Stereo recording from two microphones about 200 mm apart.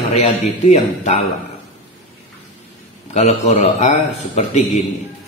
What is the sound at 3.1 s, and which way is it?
A man's voice, 35° left (ahead or behind).